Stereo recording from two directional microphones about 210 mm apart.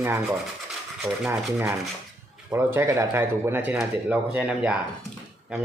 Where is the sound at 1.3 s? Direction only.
15° right (ahead or behind).